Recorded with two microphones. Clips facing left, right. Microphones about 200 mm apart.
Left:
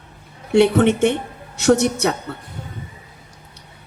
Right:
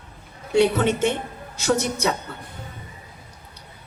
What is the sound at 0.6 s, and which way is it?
A woman's voice, 60° left (ahead or behind).